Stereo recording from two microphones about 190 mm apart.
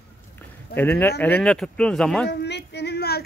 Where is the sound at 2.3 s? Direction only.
65° left (ahead or behind).